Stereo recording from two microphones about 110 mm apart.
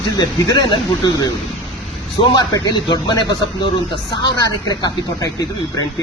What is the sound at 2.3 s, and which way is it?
Speech, 40° left (ahead or behind).